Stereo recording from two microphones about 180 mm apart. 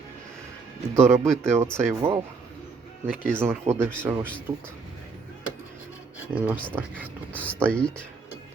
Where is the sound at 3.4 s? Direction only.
15° right (ahead or behind).